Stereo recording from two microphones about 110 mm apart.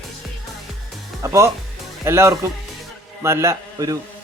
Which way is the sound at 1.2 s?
25° right (ahead or behind).